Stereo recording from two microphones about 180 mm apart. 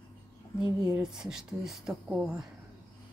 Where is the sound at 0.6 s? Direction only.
20° right (ahead or behind).